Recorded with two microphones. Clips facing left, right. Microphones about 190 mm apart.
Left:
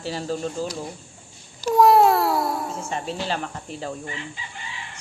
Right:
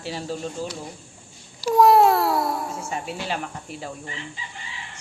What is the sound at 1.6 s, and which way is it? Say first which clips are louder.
Babbling: even; 5° right (ahead or behind).